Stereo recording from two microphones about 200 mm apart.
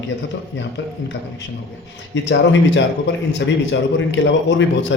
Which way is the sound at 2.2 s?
65° left (ahead or behind).